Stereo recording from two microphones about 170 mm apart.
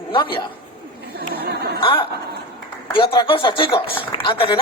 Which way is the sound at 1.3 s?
70° right (ahead or behind).